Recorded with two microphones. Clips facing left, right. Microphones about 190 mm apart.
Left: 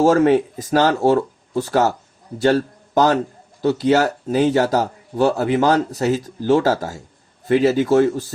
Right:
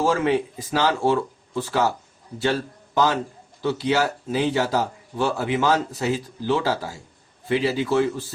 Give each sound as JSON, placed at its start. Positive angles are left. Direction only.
{"t": 0.0, "sound": "speech", "side_deg": 45}